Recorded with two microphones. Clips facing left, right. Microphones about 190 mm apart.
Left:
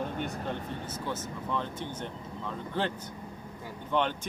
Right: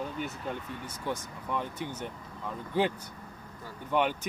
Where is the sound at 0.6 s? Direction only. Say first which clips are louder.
Left 3 dB; 45° left (ahead or behind).